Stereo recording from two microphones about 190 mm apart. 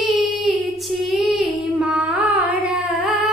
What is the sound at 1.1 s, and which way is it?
Carnatic music, centre (ahead or behind).